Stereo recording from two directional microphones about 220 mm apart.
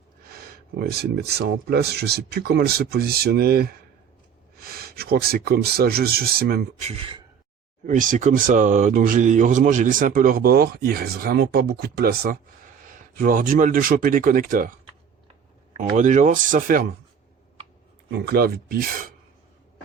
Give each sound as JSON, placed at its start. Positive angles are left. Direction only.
{"t": 0.3, "sound": "speech", "side_deg": -45}
{"t": 6.8, "sound": "speech", "side_deg": -25}
{"t": 15.8, "sound": "speech", "side_deg": -35}
{"t": 18.1, "sound": "speech", "side_deg": -45}